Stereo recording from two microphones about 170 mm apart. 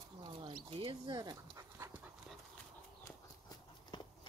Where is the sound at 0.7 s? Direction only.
35° right (ahead or behind).